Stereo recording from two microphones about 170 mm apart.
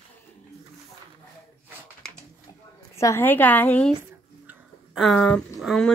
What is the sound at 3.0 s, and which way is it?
Speech, 15° left (ahead or behind).